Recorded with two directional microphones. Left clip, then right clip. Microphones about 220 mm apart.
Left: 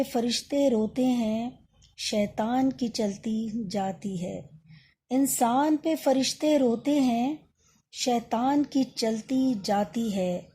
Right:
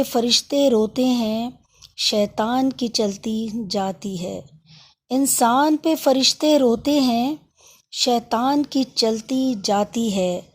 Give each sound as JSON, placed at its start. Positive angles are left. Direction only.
{"t": 0.0, "sound": "speech", "side_deg": -25}